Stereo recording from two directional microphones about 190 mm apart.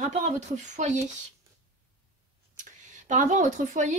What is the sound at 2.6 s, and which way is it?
Speech, 40° right (ahead or behind).